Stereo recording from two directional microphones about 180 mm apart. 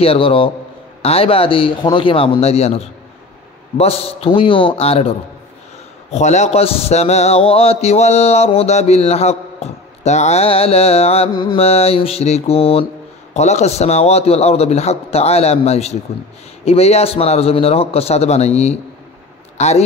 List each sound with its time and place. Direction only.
0.0 s a man's voice: 30° left (ahead or behind)
6.1 s a man's voice: 40° left (ahead or behind)